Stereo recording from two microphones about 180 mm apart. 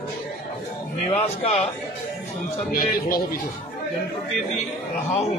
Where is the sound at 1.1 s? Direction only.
35° left (ahead or behind).